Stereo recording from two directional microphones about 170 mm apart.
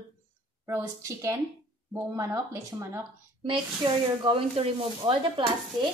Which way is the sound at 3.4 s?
30° right (ahead or behind).